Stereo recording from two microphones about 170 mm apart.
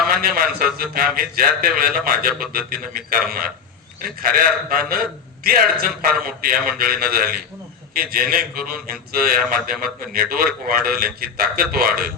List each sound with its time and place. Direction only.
0.1 s a man's voice: 60° right (ahead or behind)